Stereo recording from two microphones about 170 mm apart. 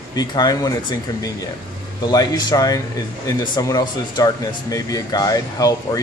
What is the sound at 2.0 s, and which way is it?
Speech, 25° left (ahead or behind).